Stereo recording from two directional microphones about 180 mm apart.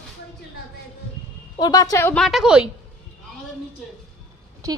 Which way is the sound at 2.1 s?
Centre (ahead or behind).